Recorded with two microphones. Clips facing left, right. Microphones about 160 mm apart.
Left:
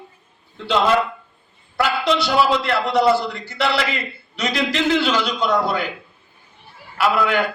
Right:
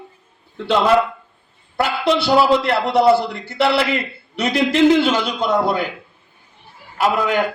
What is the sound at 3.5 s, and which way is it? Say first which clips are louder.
A man's voice: right 5 dB; 60° right (ahead or behind).